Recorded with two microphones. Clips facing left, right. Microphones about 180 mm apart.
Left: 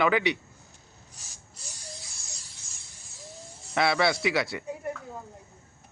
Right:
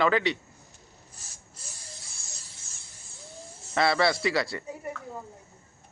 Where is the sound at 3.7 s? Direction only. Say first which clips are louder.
Even; centre (ahead or behind).